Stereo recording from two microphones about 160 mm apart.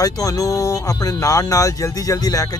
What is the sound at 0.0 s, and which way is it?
Speech, 20° left (ahead or behind).